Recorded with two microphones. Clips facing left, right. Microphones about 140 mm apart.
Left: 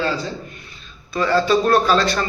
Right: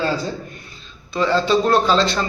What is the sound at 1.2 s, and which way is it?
A man's voice, 20° right (ahead or behind).